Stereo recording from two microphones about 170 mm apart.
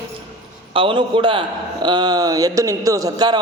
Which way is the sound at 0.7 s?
30° right (ahead or behind).